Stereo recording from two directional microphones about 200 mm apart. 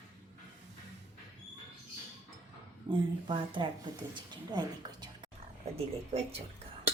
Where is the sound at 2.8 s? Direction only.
25° right (ahead or behind).